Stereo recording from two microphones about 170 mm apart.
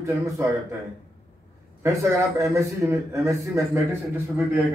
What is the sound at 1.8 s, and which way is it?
A man's voice, 20° right (ahead or behind).